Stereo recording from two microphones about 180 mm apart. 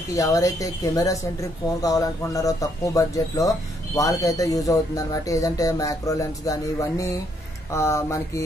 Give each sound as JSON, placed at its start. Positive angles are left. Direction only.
{"t": 0.1, "sound": "speech", "side_deg": 20}